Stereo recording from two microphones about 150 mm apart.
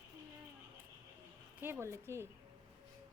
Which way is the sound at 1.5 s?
10° right (ahead or behind).